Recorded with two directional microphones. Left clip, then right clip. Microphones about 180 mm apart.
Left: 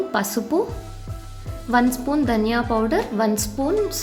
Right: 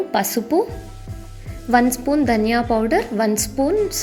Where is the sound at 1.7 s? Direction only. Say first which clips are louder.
Right 3 dB; 20° right (ahead or behind).